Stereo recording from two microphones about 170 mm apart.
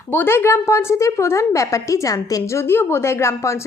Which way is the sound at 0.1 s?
10° left (ahead or behind).